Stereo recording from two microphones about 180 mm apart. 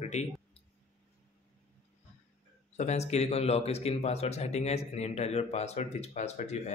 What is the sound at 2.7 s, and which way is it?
Speech, 40° left (ahead or behind).